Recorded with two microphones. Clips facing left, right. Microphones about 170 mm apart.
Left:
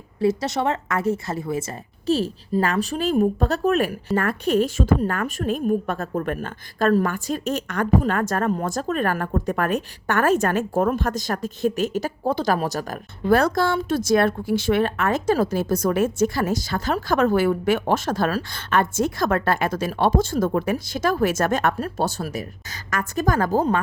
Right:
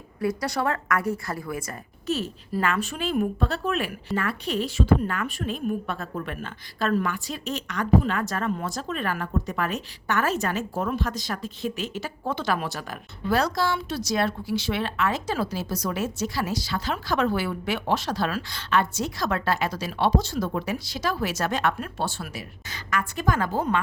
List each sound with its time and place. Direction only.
0.2 s a woman's voice: 25° left (ahead or behind)